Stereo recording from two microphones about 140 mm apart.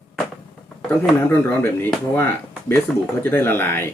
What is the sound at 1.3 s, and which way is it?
Speech, 20° left (ahead or behind).